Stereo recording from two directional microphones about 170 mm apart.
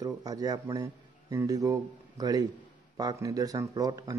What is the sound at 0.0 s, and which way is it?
Speech, 20° right (ahead or behind).